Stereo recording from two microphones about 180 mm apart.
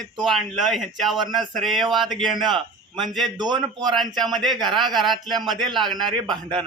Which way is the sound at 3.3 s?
25° right (ahead or behind).